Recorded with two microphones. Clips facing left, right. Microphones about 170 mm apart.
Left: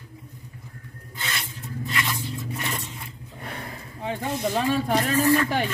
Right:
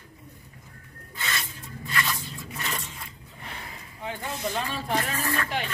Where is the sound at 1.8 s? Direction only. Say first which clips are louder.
Left 1 dB; 25° left (ahead or behind).